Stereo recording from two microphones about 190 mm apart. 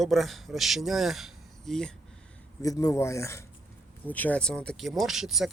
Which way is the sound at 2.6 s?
15° left (ahead or behind).